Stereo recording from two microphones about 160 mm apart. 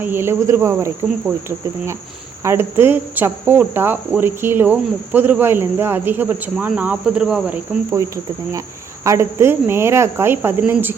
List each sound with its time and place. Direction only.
0.0 s speech: 15° right (ahead or behind)
7.9 s cricket: 20° right (ahead or behind)
9.0 s speech: 15° right (ahead or behind)